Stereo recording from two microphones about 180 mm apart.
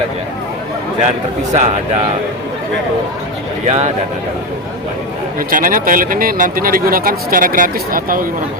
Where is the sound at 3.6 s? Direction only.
40° right (ahead or behind).